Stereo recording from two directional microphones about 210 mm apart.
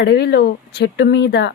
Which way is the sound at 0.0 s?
55° left (ahead or behind).